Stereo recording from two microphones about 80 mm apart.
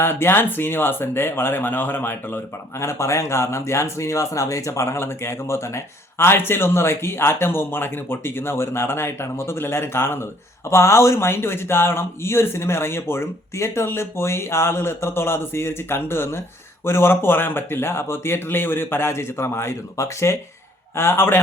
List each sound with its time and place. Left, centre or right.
0.0 s speech: left